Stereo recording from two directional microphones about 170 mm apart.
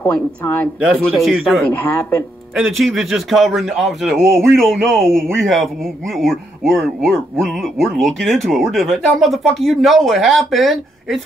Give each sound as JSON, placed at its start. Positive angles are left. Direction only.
{"t": 0.0, "sound": "speech", "side_deg": 10}
{"t": 2.8, "sound": "speech", "side_deg": 0}